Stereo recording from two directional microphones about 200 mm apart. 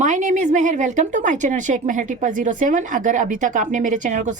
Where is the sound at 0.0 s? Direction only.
40° right (ahead or behind).